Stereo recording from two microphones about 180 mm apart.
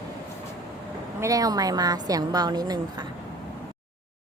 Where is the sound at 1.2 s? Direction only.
20° right (ahead or behind).